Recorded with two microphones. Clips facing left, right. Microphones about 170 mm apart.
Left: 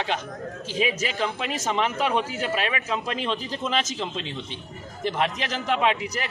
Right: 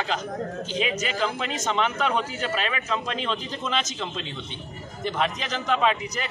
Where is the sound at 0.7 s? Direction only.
5° left (ahead or behind).